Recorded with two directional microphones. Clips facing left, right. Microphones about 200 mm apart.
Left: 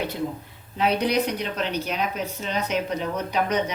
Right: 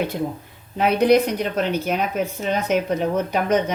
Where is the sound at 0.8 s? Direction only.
50° right (ahead or behind).